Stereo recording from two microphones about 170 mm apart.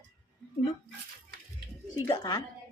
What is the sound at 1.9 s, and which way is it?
Speech, 25° left (ahead or behind).